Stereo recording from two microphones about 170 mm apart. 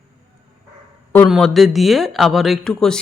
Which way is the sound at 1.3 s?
Centre (ahead or behind).